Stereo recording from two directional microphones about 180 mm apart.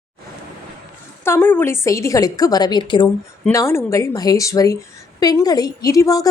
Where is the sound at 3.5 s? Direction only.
15° left (ahead or behind).